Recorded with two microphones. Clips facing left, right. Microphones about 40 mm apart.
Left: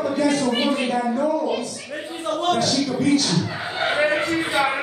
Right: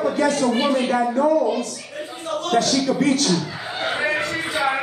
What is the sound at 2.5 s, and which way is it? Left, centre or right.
Speech, right.